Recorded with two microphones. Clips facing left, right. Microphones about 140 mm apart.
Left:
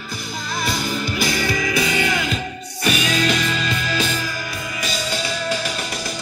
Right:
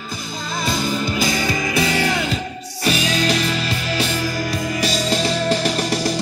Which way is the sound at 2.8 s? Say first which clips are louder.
Right 1 dB; 35° right (ahead or behind).